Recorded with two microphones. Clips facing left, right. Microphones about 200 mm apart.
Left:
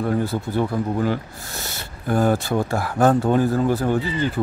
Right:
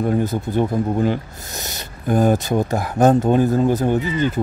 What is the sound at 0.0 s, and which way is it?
Speech, 20° right (ahead or behind).